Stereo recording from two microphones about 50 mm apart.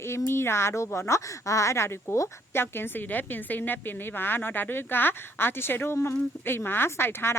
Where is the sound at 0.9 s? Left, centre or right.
Left.